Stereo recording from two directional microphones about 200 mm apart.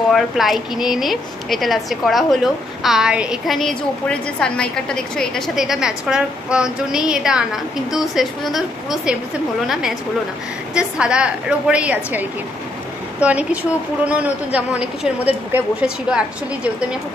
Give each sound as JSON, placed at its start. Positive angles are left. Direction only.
{"t": 0.1, "sound": "a woman's voice", "side_deg": 0}